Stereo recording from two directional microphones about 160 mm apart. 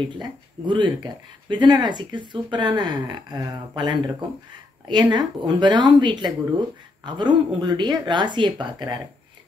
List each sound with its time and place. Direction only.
0.0 s speech: 30° right (ahead or behind)
5.1 s speech: 30° right (ahead or behind)